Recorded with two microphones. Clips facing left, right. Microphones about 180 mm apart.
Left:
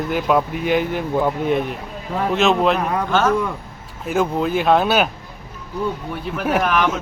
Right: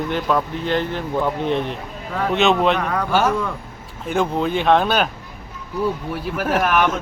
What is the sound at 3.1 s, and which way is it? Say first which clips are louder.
Speech: even; 10° right (ahead or behind).